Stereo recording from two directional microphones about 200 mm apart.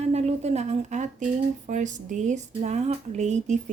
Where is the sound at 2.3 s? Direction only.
35° right (ahead or behind).